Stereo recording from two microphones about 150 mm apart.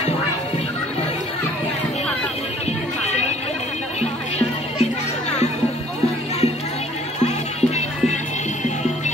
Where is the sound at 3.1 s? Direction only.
45° left (ahead or behind).